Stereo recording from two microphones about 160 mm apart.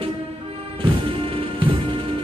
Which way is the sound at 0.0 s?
35° right (ahead or behind).